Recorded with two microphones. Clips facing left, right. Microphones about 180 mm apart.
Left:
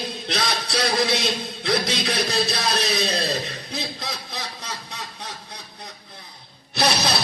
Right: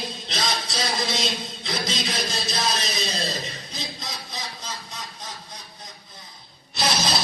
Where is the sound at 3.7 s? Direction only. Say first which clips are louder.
Left 6 dB; 65° left (ahead or behind).